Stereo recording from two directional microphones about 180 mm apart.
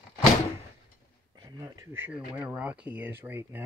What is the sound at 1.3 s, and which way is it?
Speech, 20° right (ahead or behind).